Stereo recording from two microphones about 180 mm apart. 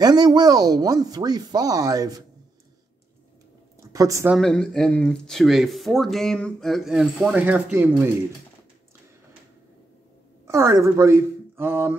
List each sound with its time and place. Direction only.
0.0 s speech: 20° right (ahead or behind)
3.9 s speech: 20° right (ahead or behind)
4.3 s speech: 5° left (ahead or behind)
10.4 s speech: 15° right (ahead or behind)